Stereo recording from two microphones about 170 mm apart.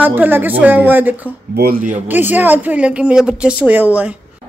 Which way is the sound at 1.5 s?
60° right (ahead or behind).